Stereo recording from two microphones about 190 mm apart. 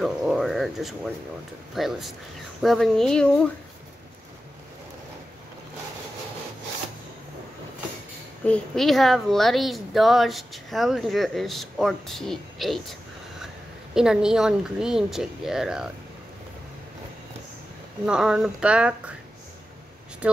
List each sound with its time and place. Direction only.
0.0 s a woman's voice: centre (ahead or behind)
8.5 s a woman's voice: 5° left (ahead or behind)
13.9 s a woman's voice: 5° right (ahead or behind)
18.0 s a woman's voice: 5° right (ahead or behind)